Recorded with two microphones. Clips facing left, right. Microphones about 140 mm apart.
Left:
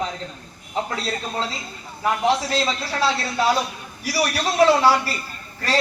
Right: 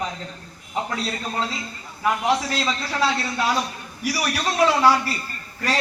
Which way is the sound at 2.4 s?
30° left (ahead or behind).